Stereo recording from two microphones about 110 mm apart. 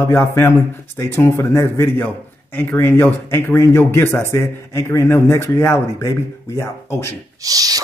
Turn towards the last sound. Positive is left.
turn(degrees=-35)  # may be behind; listen again after turning